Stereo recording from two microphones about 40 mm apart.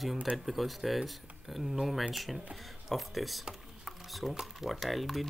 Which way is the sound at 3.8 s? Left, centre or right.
Centre.